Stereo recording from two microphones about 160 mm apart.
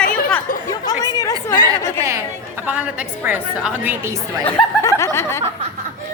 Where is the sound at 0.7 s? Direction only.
20° left (ahead or behind).